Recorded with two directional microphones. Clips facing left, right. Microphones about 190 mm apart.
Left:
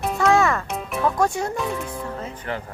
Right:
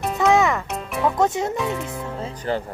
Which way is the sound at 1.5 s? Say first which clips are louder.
Right 1 dB; centre (ahead or behind).